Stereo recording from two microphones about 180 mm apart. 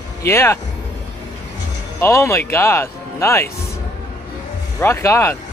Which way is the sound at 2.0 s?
15° left (ahead or behind).